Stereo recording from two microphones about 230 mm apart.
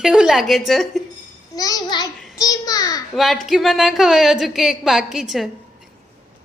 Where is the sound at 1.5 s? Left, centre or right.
Centre.